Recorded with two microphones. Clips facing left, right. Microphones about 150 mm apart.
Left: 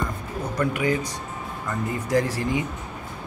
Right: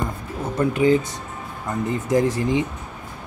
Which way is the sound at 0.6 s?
25° right (ahead or behind).